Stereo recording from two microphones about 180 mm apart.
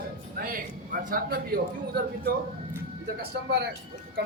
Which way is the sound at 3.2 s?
65° right (ahead or behind).